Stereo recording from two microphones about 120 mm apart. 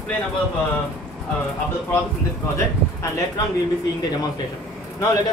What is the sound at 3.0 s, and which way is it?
Speech, 25° left (ahead or behind).